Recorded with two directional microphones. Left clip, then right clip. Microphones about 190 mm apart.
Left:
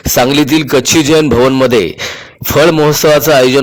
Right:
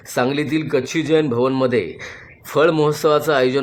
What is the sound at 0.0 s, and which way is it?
A man's voice, 40° left (ahead or behind).